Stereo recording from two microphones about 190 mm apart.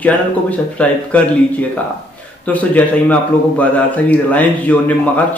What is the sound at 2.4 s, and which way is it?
A man's voice, 10° left (ahead or behind).